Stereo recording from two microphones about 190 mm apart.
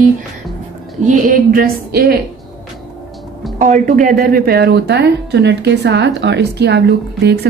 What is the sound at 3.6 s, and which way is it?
A woman's voice, 40° right (ahead or behind).